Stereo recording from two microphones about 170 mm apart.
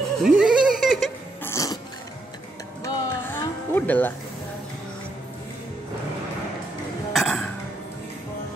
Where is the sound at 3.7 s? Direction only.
10° left (ahead or behind).